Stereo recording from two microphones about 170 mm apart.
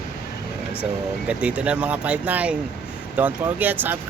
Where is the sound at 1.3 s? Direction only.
5° right (ahead or behind).